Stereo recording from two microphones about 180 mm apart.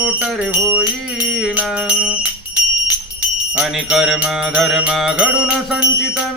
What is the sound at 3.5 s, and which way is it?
Music, 5° right (ahead or behind).